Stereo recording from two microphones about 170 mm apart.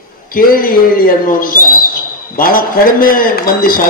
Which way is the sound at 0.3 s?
55° left (ahead or behind).